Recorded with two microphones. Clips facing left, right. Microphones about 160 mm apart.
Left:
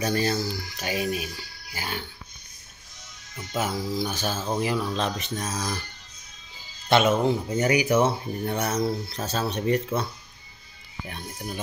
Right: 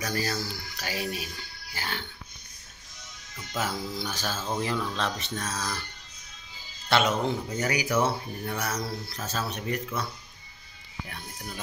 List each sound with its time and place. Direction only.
0.0 s speech: 25° left (ahead or behind)
3.3 s speech: 20° left (ahead or behind)
6.9 s speech: 25° left (ahead or behind)
11.1 s speech: 20° left (ahead or behind)